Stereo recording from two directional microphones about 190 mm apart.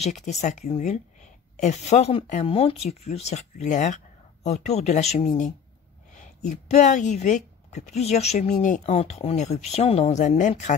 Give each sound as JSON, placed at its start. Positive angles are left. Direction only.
{"t": 0.0, "sound": "speech", "side_deg": 35}
{"t": 6.7, "sound": "speech", "side_deg": 40}